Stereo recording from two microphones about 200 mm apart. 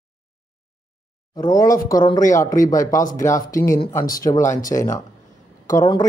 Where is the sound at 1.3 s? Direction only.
15° left (ahead or behind).